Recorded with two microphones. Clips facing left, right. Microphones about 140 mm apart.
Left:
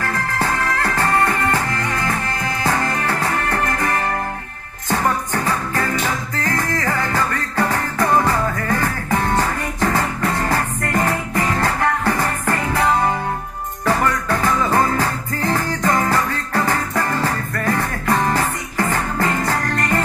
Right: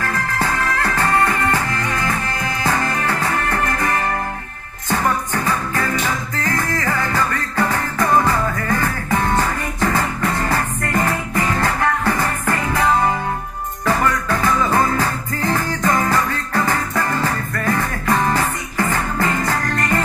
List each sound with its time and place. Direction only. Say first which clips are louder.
0.4 s music: even; 35° left (ahead or behind)